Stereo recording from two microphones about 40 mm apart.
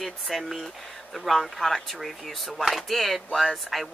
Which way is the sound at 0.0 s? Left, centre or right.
Centre.